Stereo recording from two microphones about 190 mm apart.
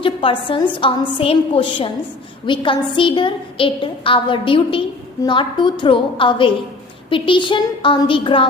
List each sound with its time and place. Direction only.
0.0 s a woman's voice: 25° left (ahead or behind)